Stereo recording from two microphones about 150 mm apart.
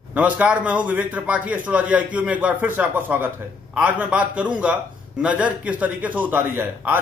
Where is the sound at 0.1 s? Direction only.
10° right (ahead or behind).